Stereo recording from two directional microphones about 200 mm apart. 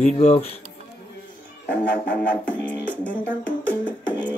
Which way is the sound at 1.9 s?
5° left (ahead or behind).